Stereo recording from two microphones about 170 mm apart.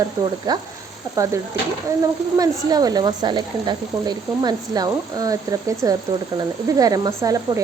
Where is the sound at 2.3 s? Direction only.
20° right (ahead or behind).